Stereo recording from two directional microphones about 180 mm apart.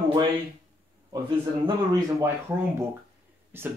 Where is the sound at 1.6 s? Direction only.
20° right (ahead or behind).